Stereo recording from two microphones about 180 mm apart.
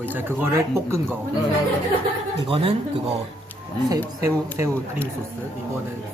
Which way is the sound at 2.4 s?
30° right (ahead or behind).